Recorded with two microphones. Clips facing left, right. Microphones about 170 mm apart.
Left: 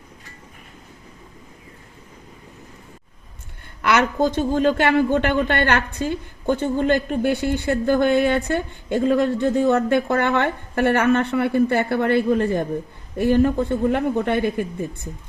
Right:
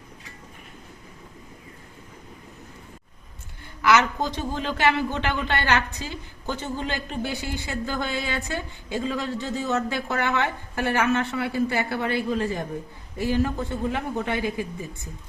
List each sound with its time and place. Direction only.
3.8 s a man's voice: 55° left (ahead or behind)